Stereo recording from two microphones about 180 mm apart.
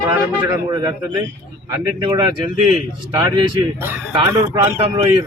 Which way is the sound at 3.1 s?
25° right (ahead or behind).